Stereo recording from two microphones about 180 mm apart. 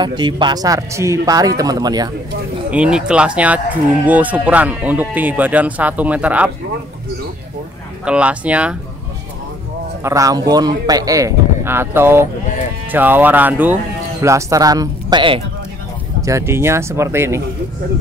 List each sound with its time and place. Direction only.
0.0 s a man's voice: 25° right (ahead or behind)
2.7 s speech: 5° right (ahead or behind)
8.0 s speech: 5° right (ahead or behind)
10.0 s a man's voice: 20° right (ahead or behind)
16.2 s speech: 15° right (ahead or behind)